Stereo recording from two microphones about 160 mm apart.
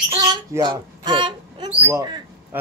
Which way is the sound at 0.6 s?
30° right (ahead or behind).